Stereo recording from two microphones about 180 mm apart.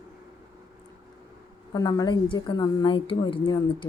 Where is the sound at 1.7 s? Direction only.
20° left (ahead or behind).